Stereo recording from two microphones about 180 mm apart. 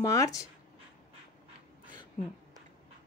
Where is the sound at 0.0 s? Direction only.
15° left (ahead or behind).